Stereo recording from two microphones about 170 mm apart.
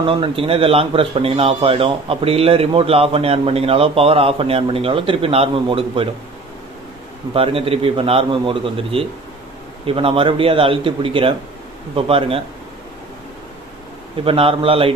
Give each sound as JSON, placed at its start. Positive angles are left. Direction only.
{"t": 0.0, "sound": "speech", "side_deg": -30}
{"t": 7.3, "sound": "speech", "side_deg": -35}
{"t": 14.2, "sound": "speech", "side_deg": -30}